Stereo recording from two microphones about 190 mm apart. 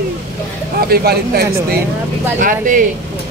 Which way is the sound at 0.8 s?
55° right (ahead or behind).